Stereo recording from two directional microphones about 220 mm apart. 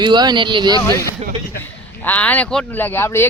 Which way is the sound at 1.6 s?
10° left (ahead or behind).